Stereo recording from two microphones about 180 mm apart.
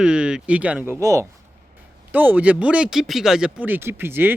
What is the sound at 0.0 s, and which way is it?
Speech, 5° right (ahead or behind).